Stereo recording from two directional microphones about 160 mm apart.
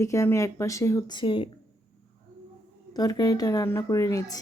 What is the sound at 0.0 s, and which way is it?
Speech, 20° left (ahead or behind).